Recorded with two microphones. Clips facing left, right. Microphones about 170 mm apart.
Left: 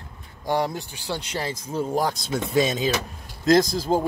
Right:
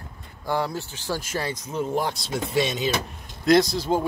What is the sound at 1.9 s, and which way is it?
Speech, 40° left (ahead or behind).